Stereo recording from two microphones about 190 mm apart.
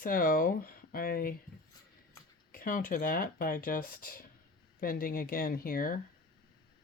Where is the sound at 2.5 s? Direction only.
45° left (ahead or behind).